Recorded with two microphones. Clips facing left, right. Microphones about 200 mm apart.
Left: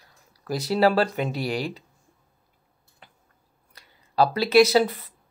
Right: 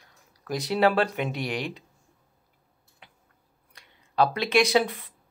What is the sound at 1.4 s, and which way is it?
Speech, 35° left (ahead or behind).